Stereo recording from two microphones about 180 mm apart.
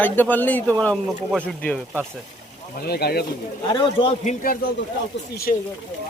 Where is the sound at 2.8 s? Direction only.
60° left (ahead or behind).